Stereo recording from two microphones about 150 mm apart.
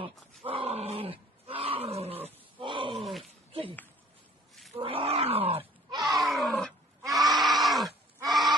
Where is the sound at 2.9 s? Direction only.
Centre (ahead or behind).